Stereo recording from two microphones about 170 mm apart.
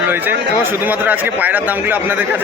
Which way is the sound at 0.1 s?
10° right (ahead or behind).